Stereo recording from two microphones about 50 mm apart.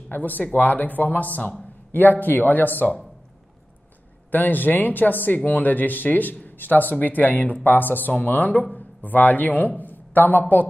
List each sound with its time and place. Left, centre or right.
0.1 s speech: left
4.3 s a man's voice: left